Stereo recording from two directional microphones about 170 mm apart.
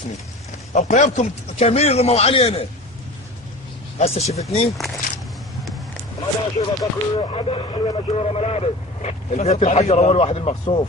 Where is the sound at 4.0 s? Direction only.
40° left (ahead or behind).